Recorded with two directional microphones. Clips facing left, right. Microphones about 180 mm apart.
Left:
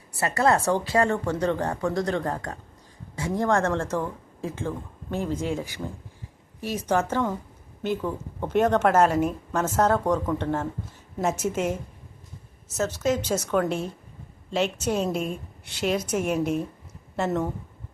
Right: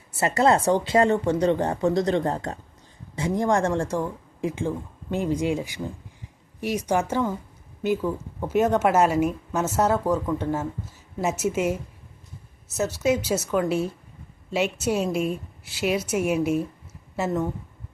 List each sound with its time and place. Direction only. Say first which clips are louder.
0.2 s a woman's voice: right 2 dB; 20° right (ahead or behind); by 17.5 s 5° right (ahead or behind)